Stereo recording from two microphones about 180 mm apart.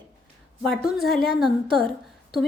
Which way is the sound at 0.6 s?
Centre (ahead or behind).